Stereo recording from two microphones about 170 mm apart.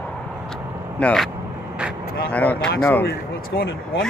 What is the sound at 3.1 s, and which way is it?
Speech, 75° left (ahead or behind).